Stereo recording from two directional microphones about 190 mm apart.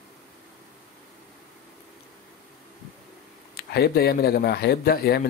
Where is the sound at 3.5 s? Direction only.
55° left (ahead or behind).